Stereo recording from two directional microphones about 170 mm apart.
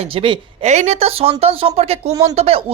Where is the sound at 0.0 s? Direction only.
35° right (ahead or behind).